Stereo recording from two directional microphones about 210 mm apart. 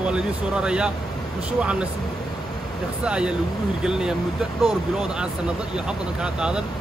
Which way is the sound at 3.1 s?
5° right (ahead or behind).